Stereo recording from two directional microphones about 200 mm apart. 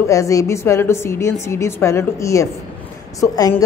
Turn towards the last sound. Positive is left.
turn(degrees=15)  # may be behind; listen again after turning